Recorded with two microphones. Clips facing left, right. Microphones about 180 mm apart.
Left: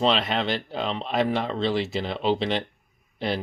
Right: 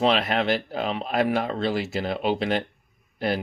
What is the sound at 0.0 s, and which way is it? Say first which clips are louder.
Speech: right 1 dB; 5° right (ahead or behind).